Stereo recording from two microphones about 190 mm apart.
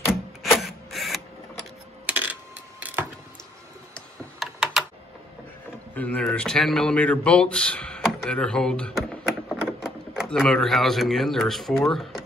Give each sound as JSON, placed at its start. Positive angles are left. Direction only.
{"t": 0.4, "sound": "a sound", "side_deg": 0}
{"t": 3.9, "sound": "tick-tock", "side_deg": 0}
{"t": 5.9, "sound": "speech", "side_deg": 10}